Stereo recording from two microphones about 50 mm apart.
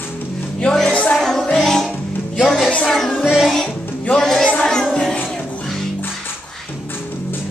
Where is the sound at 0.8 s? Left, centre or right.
Left.